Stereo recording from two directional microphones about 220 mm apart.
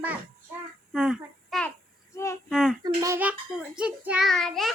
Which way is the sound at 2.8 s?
15° right (ahead or behind).